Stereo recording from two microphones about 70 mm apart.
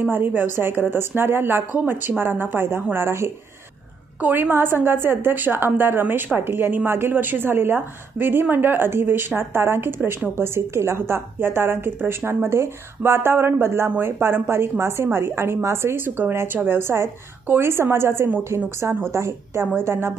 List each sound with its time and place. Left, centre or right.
0.0 s a woman's voice: right
4.2 s a woman's voice: right